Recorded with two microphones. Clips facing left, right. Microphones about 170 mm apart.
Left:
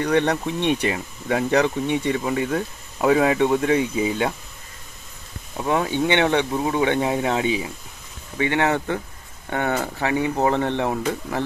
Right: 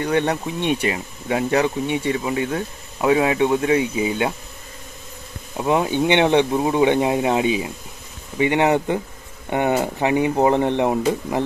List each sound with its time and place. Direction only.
0.0 s speech: 5° right (ahead or behind)
5.6 s speech: 15° right (ahead or behind)